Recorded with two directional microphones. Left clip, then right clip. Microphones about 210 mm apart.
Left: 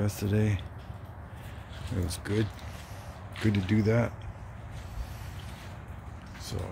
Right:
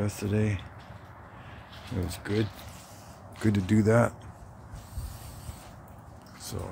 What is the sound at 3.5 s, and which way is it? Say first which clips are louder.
Speech: right 4 dB; 20° right (ahead or behind).